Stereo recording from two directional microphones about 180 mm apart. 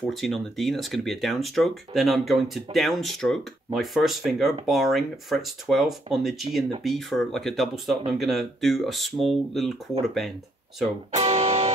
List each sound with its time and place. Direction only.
0.0 s speech: centre (ahead or behind)
11.1 s music: 35° right (ahead or behind)